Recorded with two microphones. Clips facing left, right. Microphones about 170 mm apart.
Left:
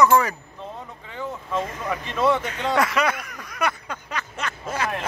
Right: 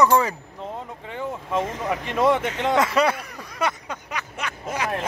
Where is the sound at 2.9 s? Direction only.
30° right (ahead or behind).